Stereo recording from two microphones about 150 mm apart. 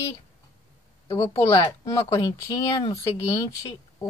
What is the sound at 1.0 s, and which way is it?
Speech, 20° left (ahead or behind).